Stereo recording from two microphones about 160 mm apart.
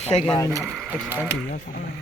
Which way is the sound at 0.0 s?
45° left (ahead or behind).